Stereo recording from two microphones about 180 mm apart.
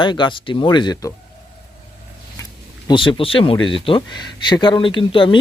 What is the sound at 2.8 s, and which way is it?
Speech, 25° left (ahead or behind).